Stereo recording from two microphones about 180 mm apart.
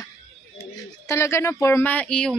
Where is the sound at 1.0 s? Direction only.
15° left (ahead or behind).